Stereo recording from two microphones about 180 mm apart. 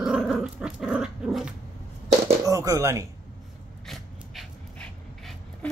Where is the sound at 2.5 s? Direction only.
15° right (ahead or behind).